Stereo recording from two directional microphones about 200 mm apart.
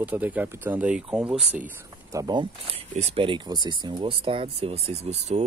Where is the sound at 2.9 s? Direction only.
30° right (ahead or behind).